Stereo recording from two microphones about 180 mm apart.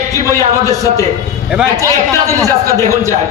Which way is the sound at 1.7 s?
15° right (ahead or behind).